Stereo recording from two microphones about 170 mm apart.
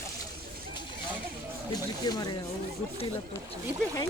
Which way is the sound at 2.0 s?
25° left (ahead or behind).